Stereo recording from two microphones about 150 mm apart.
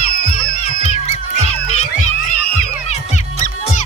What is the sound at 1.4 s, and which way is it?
Music, 45° left (ahead or behind).